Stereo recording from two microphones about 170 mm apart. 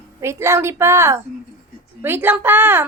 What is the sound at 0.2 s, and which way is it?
A woman's voice, 15° right (ahead or behind).